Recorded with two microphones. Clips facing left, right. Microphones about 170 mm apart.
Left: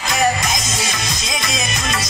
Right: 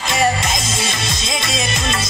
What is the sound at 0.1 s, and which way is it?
Music, 25° right (ahead or behind).